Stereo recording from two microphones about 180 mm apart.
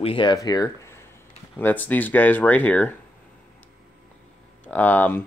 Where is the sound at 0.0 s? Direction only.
30° left (ahead or behind).